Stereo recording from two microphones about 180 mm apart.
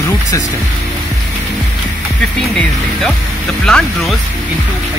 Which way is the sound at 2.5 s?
Centre (ahead or behind).